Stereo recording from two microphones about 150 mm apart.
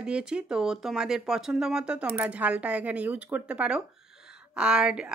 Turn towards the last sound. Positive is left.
turn(degrees=-5)  # may be behind; listen again after turning